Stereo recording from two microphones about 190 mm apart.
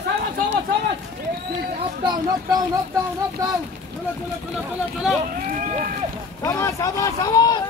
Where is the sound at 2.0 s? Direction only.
20° right (ahead or behind).